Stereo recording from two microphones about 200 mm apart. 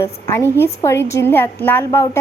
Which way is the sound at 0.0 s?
10° left (ahead or behind).